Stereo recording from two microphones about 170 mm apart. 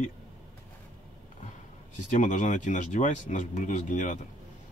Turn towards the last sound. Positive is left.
turn(degrees=50)  # may be behind; listen again after turning